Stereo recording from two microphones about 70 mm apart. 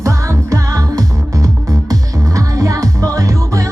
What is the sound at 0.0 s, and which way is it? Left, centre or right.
Music, right.